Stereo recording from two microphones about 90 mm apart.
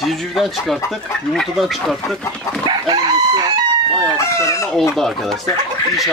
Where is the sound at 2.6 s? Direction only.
50° right (ahead or behind).